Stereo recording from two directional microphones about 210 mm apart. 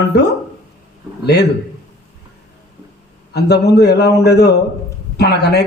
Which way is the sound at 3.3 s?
50° left (ahead or behind).